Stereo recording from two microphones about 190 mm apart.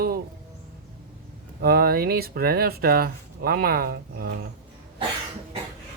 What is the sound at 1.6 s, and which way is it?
Speech, 55° right (ahead or behind).